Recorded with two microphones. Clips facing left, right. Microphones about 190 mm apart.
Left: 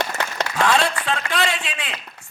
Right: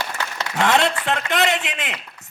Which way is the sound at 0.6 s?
20° right (ahead or behind).